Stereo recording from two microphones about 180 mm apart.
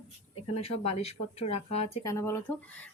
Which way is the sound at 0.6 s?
35° left (ahead or behind).